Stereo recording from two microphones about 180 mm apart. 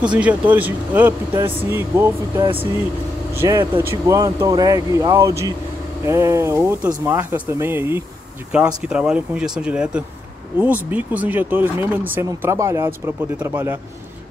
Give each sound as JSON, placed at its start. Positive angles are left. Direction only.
{"t": 0.1, "sound": "speech", "side_deg": -10}